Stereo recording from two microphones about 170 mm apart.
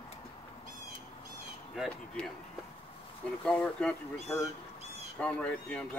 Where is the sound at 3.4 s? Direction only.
5° left (ahead or behind).